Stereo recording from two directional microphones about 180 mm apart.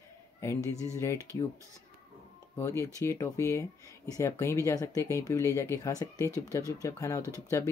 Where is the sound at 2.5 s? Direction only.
15° left (ahead or behind).